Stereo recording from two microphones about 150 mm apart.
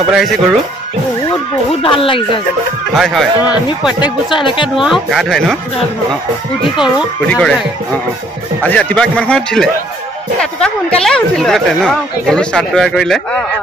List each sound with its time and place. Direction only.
0.1 s speech: centre (ahead or behind)
1.8 s speech: 35° left (ahead or behind)
2.9 s speech: centre (ahead or behind)
4.0 s speech: 35° left (ahead or behind)
4.7 s speech: centre (ahead or behind)
7.2 s a man's voice: 10° left (ahead or behind)
8.6 s a man's voice: 10° left (ahead or behind)